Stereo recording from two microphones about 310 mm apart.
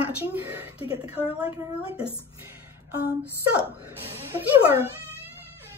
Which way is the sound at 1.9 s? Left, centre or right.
Centre.